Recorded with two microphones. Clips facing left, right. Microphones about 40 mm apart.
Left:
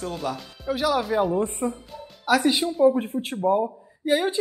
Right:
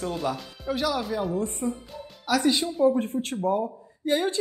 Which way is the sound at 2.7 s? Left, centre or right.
Centre.